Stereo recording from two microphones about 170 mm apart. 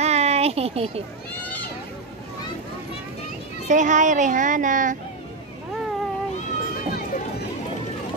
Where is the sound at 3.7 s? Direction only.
45° right (ahead or behind).